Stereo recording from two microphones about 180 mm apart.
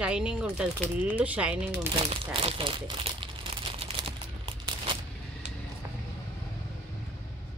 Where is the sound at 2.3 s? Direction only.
30° right (ahead or behind).